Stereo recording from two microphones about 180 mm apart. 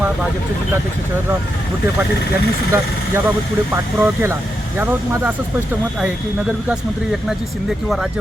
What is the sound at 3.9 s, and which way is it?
Speech, 10° right (ahead or behind).